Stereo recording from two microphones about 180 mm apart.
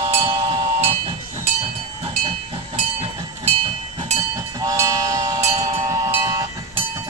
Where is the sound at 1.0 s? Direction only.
35° right (ahead or behind).